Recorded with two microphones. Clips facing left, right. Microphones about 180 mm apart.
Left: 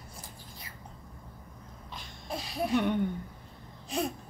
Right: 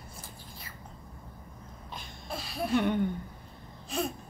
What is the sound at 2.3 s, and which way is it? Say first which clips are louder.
Music: left 2 dB; 20° left (ahead or behind).